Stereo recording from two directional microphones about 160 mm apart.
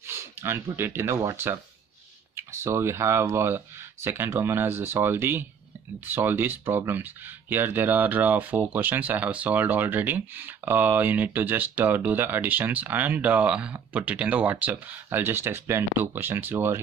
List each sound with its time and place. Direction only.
0.0 s speech: 15° right (ahead or behind)